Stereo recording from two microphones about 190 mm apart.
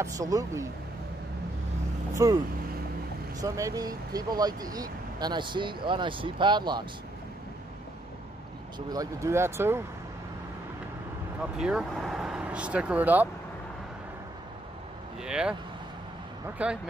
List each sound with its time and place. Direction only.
0.0 s speech: 15° right (ahead or behind)
2.1 s speech: 20° right (ahead or behind)
8.7 s speech: 20° right (ahead or behind)
11.5 s speech: 5° right (ahead or behind)
15.2 s speech: 5° right (ahead or behind)
16.6 s speech: 5° right (ahead or behind)